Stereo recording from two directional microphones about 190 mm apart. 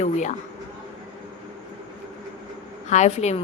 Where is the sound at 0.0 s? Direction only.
40° left (ahead or behind).